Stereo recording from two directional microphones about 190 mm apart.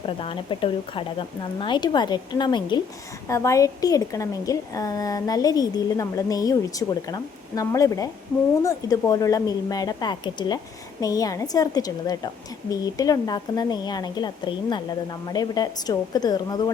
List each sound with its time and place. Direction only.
0.0 s a woman's voice: 30° left (ahead or behind)